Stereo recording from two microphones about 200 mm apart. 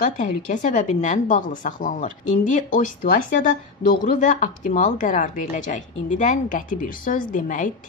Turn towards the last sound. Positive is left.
turn(degrees=40)  # may be behind; listen again after turning